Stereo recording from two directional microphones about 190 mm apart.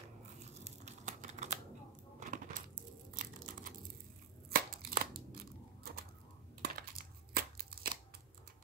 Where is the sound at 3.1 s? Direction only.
45° right (ahead or behind).